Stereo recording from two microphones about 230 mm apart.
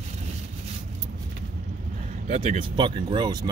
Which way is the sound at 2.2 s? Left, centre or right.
Right.